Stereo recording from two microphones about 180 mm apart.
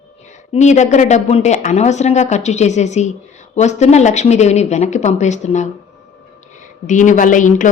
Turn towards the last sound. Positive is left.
turn(degrees=45)  # may be behind; listen again after turning